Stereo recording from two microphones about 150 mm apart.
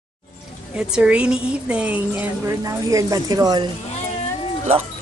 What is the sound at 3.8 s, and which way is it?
Cat, 45° left (ahead or behind).